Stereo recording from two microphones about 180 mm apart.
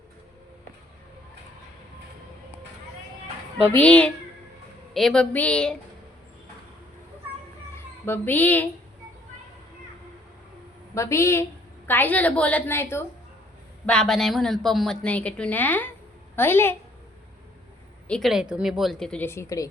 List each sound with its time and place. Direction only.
3.7 s a woman's voice: 10° left (ahead or behind)
8.0 s a woman's voice: 10° left (ahead or behind)
10.9 s a woman's voice: 15° left (ahead or behind)
18.1 s a woman's voice: centre (ahead or behind); by 19.7 s 20° left (ahead or behind)